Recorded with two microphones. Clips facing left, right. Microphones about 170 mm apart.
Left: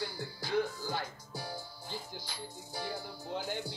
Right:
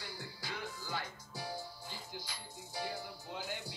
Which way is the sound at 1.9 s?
35° left (ahead or behind).